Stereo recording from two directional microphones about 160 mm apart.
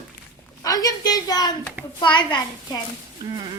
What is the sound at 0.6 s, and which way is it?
A child's voice, 20° left (ahead or behind).